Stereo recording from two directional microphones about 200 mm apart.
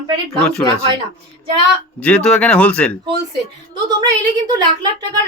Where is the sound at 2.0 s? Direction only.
5° left (ahead or behind).